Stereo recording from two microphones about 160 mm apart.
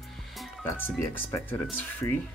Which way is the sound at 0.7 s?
15° left (ahead or behind).